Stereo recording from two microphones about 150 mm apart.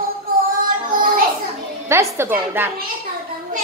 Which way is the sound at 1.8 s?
20° right (ahead or behind).